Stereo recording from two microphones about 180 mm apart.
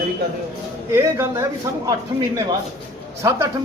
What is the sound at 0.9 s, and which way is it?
Speech, 15° right (ahead or behind).